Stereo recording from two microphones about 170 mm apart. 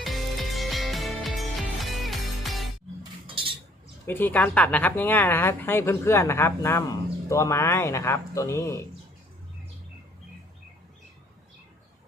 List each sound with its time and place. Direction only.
0.0 s music: centre (ahead or behind)
3.2 s a sound: 30° right (ahead or behind)
4.0 s speech: 10° left (ahead or behind)